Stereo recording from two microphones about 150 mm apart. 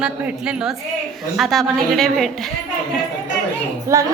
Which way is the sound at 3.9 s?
20° right (ahead or behind).